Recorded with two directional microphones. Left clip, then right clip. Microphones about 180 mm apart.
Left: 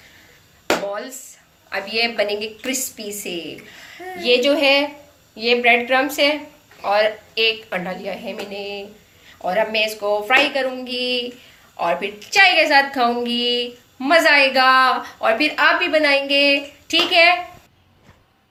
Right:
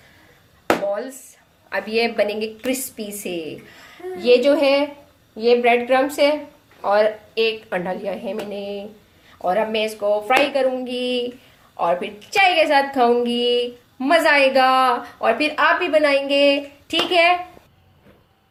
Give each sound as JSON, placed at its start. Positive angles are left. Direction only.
{"t": 1.7, "sound": "a woman's voice", "side_deg": -45}